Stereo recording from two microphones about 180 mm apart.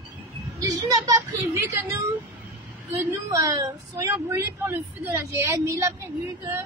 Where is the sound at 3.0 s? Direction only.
15° right (ahead or behind).